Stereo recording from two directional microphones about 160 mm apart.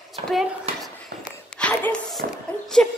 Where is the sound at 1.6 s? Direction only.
10° left (ahead or behind).